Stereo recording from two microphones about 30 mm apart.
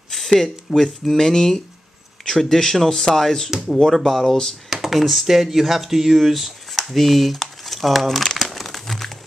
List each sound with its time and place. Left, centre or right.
0.1 s a sound: centre
0.7 s speech: centre
1.1 s speech: centre
3.4 s speech: centre
4.0 s speech: centre
8.4 s crumpling: centre